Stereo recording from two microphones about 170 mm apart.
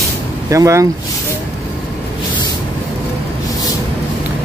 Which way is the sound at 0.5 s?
20° right (ahead or behind).